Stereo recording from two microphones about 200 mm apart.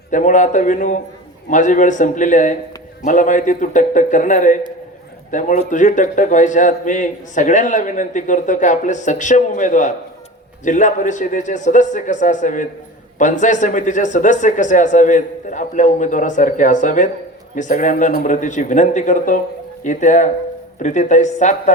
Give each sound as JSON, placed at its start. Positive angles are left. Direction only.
{"t": 0.1, "sound": "a man's voice", "side_deg": 40}